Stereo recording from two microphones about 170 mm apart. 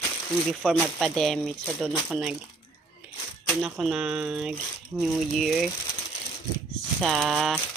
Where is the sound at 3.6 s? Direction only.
Centre (ahead or behind).